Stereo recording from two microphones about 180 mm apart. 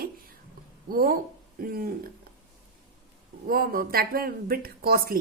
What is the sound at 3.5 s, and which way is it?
Speech, 55° right (ahead or behind).